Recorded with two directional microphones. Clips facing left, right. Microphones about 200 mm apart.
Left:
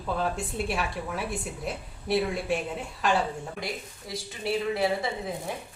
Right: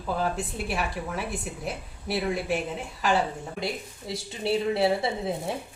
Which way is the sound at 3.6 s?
25° right (ahead or behind).